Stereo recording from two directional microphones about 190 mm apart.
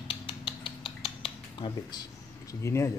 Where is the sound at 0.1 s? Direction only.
25° left (ahead or behind).